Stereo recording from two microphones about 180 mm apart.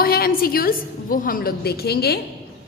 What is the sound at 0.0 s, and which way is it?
A woman's voice, 55° left (ahead or behind).